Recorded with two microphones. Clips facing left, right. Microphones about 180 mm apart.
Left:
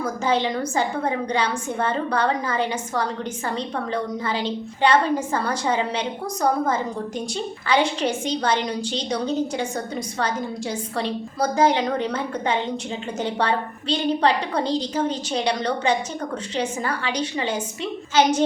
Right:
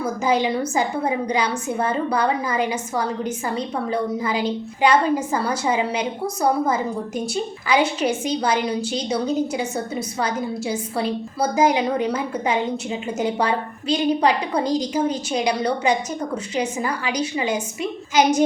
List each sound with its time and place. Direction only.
0.0 s a woman's voice: 10° right (ahead or behind)